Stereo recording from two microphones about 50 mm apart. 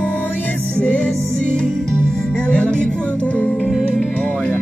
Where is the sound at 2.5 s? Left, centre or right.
Left.